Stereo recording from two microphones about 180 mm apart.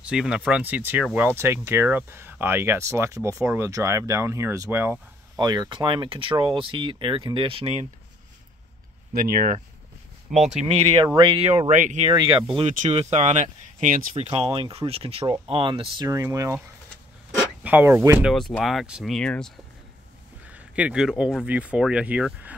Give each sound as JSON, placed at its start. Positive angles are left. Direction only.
{"t": 0.0, "sound": "speech", "side_deg": -5}
{"t": 5.4, "sound": "speech", "side_deg": -25}
{"t": 9.1, "sound": "speech", "side_deg": -50}
{"t": 10.3, "sound": "speech", "side_deg": 0}
{"t": 11.1, "sound": "speech", "side_deg": -30}
{"t": 11.7, "sound": "speech", "side_deg": -45}
{"t": 12.1, "sound": "speech", "side_deg": -25}
{"t": 12.5, "sound": "speech", "side_deg": -40}
{"t": 14.3, "sound": "speech", "side_deg": -30}
{"t": 17.6, "sound": "speech", "side_deg": -10}
{"t": 18.3, "sound": "speech", "side_deg": 0}
{"t": 20.4, "sound": "speech", "side_deg": -10}